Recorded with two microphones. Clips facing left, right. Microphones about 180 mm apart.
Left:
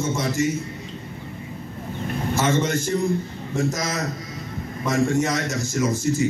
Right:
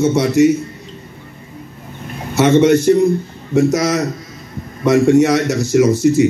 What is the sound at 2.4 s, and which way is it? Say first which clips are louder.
Speech: right 12 dB; 70° right (ahead or behind).